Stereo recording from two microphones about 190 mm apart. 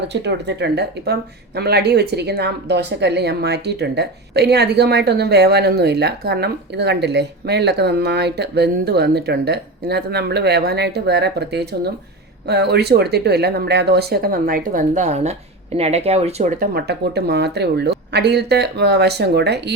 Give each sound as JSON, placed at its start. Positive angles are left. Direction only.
{"t": 0.1, "sound": "speech", "side_deg": -65}